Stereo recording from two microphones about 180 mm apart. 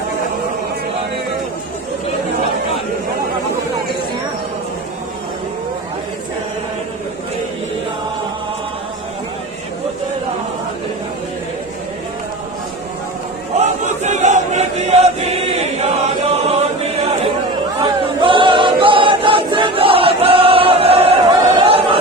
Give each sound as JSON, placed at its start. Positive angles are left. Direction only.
{"t": 13.6, "sound": "choir", "side_deg": -40}
{"t": 21.5, "sound": "chatter", "side_deg": -30}